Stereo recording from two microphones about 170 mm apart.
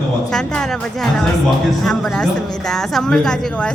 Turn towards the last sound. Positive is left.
turn(degrees=5)  # may be behind; listen again after turning